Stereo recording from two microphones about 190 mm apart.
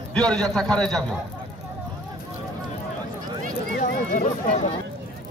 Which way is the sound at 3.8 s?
45° left (ahead or behind).